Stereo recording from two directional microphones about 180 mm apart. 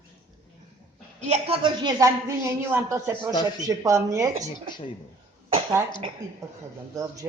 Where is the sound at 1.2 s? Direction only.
35° right (ahead or behind); by 4.5 s 15° right (ahead or behind).